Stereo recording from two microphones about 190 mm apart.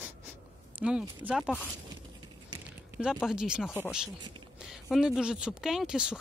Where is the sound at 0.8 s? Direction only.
5° right (ahead or behind).